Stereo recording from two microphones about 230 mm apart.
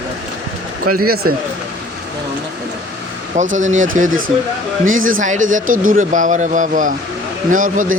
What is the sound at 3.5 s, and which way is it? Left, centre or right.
Speech, right.